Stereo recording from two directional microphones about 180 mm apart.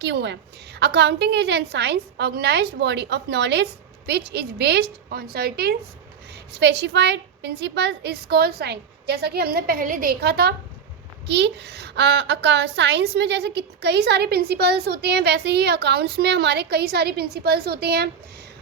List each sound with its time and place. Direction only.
0.0 s a child's voice: 70° right (ahead or behind)